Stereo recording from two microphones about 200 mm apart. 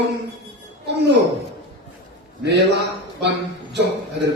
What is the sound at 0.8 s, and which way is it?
Speech, 60° right (ahead or behind).